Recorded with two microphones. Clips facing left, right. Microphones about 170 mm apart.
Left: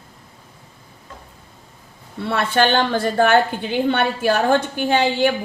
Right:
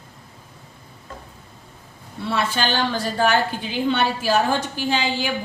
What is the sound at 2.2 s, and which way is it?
A woman's voice, 60° left (ahead or behind).